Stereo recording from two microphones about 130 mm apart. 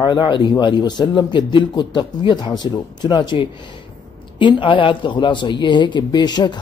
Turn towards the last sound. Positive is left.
turn(degrees=35)  # may be behind; listen again after turning